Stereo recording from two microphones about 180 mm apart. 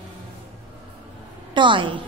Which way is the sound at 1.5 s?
25° right (ahead or behind).